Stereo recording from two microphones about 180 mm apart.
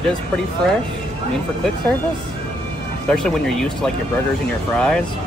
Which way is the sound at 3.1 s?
5° left (ahead or behind).